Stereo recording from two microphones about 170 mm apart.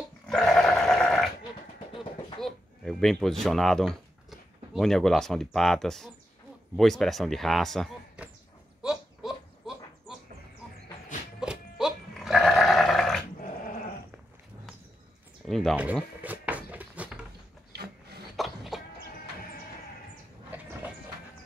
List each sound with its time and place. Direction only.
0.3 s sheep: 5° left (ahead or behind)
2.4 s speech: centre (ahead or behind)
8.8 s a sound: centre (ahead or behind)
11.3 s goat: 5° right (ahead or behind)
15.4 s a sound: centre (ahead or behind)
15.7 s speech: 10° right (ahead or behind)
16.2 s cupboard open or close: 10° right (ahead or behind)
17.7 s rub: 70° right (ahead or behind)
18.3 s cough: centre (ahead or behind)